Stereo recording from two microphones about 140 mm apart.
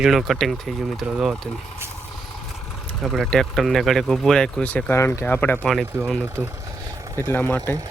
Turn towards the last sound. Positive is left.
turn(degrees=15)  # may be behind; listen again after turning